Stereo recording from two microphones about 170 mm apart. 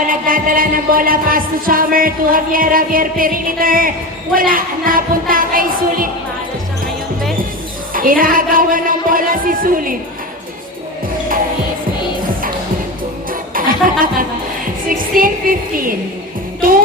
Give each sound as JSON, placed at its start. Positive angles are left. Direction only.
{"t": 0.1, "sound": "music", "side_deg": -55}
{"t": 7.9, "sound": "music", "side_deg": -55}
{"t": 13.5, "sound": "music", "side_deg": -55}
{"t": 15.1, "sound": "music", "side_deg": -55}